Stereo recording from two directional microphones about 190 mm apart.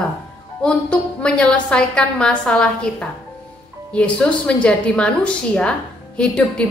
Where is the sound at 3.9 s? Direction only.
5° left (ahead or behind).